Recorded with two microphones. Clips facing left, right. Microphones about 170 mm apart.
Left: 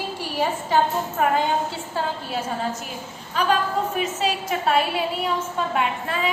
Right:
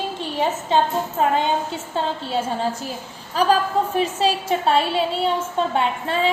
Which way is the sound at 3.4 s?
35° right (ahead or behind).